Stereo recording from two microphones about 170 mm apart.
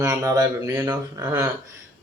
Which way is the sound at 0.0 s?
20° right (ahead or behind).